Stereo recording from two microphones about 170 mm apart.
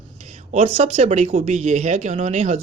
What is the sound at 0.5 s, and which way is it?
A woman's voice, 40° right (ahead or behind).